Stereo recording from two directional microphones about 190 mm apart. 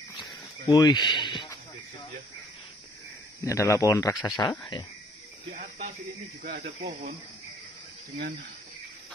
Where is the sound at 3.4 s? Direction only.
15° left (ahead or behind).